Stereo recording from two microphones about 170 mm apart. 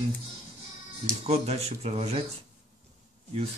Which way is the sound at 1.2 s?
35° right (ahead or behind).